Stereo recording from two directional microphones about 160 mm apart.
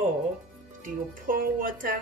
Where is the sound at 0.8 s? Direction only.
60° right (ahead or behind).